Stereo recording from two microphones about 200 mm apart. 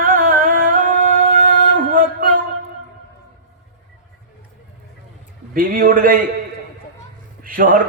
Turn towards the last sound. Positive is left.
turn(degrees=-45)  # may be behind; listen again after turning